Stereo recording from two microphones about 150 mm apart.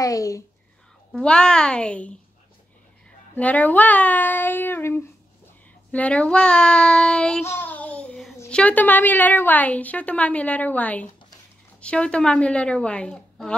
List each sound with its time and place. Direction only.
0.0 s speech: 20° left (ahead or behind)
1.1 s a woman's voice: 5° left (ahead or behind)
3.3 s a woman's voice: 10° left (ahead or behind)
5.9 s child singing: 10° left (ahead or behind)
7.4 s a sound: 15° left (ahead or behind)
8.5 s a woman's voice: 10° left (ahead or behind)